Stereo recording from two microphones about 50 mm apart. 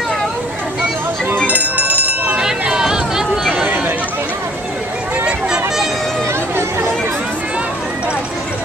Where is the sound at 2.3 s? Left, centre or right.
Centre.